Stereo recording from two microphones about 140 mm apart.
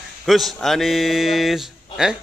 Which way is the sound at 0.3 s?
Centre (ahead or behind).